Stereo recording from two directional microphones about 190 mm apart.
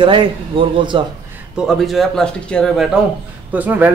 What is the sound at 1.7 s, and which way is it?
Speech, centre (ahead or behind).